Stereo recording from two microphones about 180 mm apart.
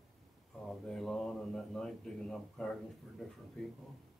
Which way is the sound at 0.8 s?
5° left (ahead or behind).